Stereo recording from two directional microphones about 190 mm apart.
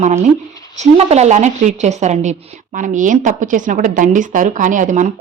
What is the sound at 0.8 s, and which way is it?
Speech, 35° right (ahead or behind).